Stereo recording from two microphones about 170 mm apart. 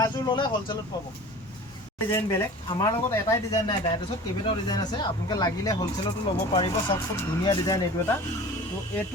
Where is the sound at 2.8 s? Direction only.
15° left (ahead or behind).